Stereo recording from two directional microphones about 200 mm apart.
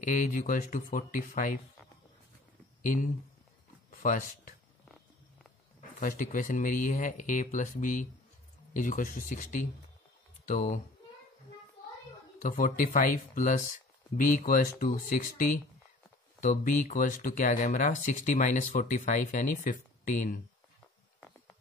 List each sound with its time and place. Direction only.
0.0 s speech: 40° left (ahead or behind)
2.8 s speech: 40° left (ahead or behind)
5.9 s speech: 40° left (ahead or behind)
12.4 s speech: 45° left (ahead or behind)